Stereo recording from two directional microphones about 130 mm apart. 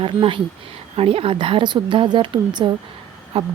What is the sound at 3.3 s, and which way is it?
Speech, 50° right (ahead or behind).